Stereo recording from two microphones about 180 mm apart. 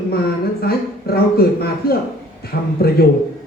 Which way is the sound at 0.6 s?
60° left (ahead or behind).